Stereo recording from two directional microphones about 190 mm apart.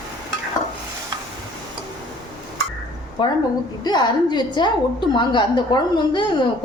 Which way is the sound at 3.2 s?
25° left (ahead or behind).